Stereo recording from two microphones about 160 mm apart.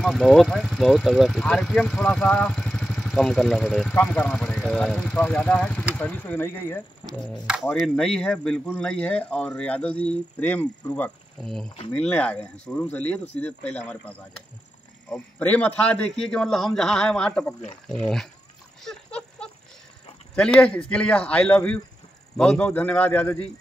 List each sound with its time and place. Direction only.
0.0 s a man's voice: centre (ahead or behind)
15.0 s speech: 5° left (ahead or behind)
18.9 s a sound: 5° left (ahead or behind)
20.3 s a man's voice: 5° left (ahead or behind)